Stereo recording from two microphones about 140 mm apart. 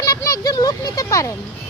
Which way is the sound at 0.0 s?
25° left (ahead or behind).